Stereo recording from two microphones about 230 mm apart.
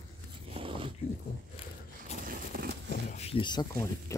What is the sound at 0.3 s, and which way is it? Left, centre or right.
Biting, right.